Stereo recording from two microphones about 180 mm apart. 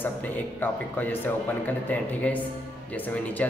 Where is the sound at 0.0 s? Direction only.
10° left (ahead or behind).